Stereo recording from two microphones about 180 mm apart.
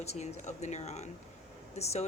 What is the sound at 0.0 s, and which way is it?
Speech, 35° left (ahead or behind).